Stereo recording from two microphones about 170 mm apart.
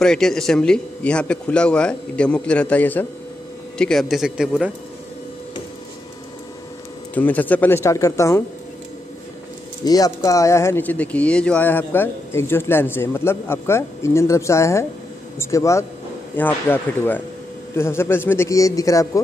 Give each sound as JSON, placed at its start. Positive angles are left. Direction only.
{"t": 0.0, "sound": "a man's voice", "side_deg": 5}
{"t": 7.2, "sound": "speech", "side_deg": 10}
{"t": 9.8, "sound": "speech", "side_deg": 20}